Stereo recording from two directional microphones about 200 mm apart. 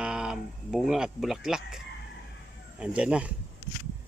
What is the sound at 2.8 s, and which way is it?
Speech, 5° right (ahead or behind).